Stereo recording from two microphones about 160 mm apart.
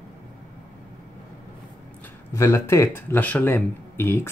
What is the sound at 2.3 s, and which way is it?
Speech, 15° left (ahead or behind).